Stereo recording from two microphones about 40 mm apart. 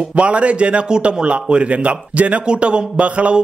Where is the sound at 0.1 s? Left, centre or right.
Right.